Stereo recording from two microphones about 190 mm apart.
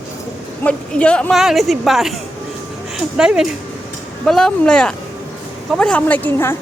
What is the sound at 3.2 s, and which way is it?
A woman's voice, 5° right (ahead or behind).